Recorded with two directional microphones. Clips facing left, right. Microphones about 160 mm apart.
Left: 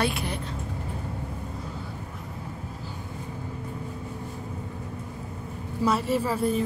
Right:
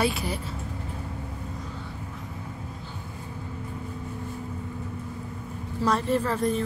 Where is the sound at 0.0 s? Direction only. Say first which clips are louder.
Right 1 dB; centre (ahead or behind).